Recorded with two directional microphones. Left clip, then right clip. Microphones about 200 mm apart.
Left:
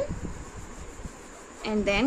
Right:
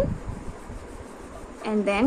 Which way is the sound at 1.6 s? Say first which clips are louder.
Right 2 dB; 20° left (ahead or behind).